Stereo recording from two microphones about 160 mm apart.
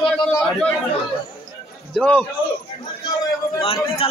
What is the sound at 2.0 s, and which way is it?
Speech, 5° left (ahead or behind).